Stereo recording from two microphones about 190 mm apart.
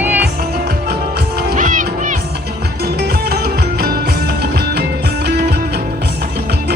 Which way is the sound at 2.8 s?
55° right (ahead or behind).